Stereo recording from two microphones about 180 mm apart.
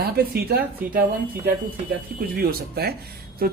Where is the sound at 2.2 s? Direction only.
55° right (ahead or behind).